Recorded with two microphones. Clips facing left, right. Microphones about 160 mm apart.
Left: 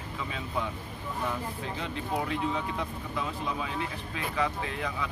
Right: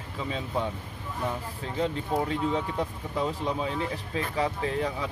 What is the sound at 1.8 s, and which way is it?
Speech, 35° right (ahead or behind).